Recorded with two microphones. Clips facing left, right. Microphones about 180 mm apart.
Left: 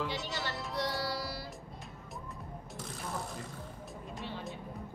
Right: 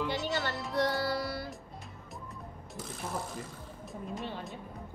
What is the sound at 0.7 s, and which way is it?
Music, 55° right (ahead or behind).